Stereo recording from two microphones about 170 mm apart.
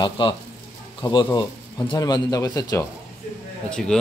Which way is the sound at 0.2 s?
30° left (ahead or behind).